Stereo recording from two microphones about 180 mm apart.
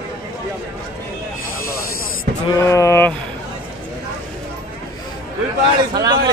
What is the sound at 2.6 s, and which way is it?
Speech, 15° left (ahead or behind).